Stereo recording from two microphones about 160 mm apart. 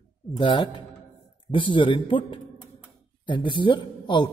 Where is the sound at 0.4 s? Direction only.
30° left (ahead or behind).